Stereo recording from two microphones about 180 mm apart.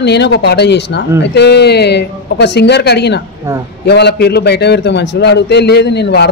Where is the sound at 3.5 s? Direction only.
15° right (ahead or behind).